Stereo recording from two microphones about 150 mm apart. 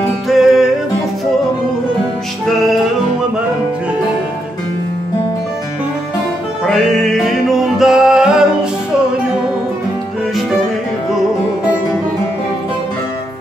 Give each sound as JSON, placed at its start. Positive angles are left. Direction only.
{"t": 0.3, "sound": "music", "side_deg": 0}
{"t": 6.6, "sound": "music", "side_deg": 0}